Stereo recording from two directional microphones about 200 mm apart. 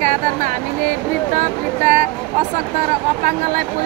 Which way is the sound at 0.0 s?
45° right (ahead or behind).